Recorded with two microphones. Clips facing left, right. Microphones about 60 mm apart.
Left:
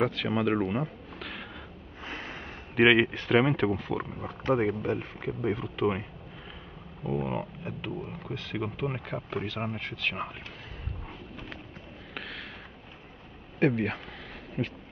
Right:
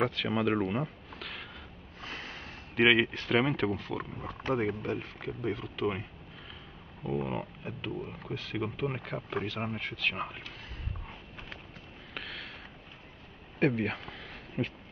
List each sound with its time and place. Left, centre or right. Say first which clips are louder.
0.0 s speech: left 2 dB; centre
2.0 s sniff: left 3 dB; centre
2.7 s speech: left 3 dB; centre
12.1 s a sound: left 2 dB; centre
13.6 s speech: left 2 dB; centre